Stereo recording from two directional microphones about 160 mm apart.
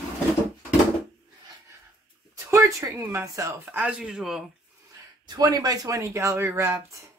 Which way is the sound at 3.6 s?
5° right (ahead or behind).